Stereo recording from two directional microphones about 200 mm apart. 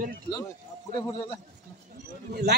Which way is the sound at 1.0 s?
20° left (ahead or behind).